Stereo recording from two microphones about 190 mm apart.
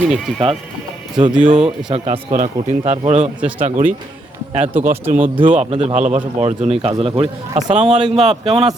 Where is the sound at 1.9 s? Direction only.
30° right (ahead or behind).